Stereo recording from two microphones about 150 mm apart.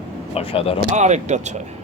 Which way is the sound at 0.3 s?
40° left (ahead or behind).